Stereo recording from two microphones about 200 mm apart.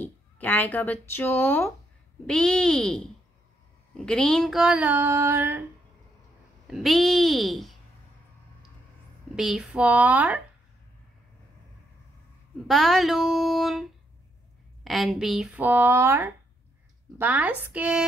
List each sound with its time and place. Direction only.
0.0 s a sound: 10° left (ahead or behind)
1.1 s speech: 10° left (ahead or behind)
2.2 s female singing: 5° left (ahead or behind); by 5.7 s 10° right (ahead or behind)
6.7 s female singing: centre (ahead or behind)
9.3 s speech: centre (ahead or behind)
12.6 s female singing: centre (ahead or behind)
14.8 s speech: centre (ahead or behind)